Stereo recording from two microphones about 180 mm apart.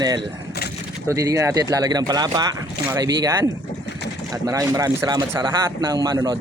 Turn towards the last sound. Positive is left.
turn(degrees=-20)  # may be behind; listen again after turning